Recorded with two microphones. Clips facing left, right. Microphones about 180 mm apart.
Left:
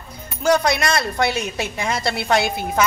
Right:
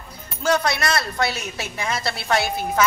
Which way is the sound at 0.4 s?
15° left (ahead or behind).